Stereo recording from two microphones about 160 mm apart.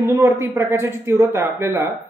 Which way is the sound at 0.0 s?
20° right (ahead or behind).